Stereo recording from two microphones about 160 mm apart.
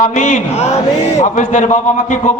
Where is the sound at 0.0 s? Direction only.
50° left (ahead or behind).